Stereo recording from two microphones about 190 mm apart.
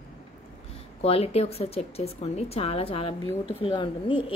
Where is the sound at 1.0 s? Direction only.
30° left (ahead or behind).